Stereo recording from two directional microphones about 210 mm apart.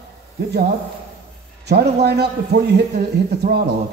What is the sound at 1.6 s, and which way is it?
Speech, 50° right (ahead or behind).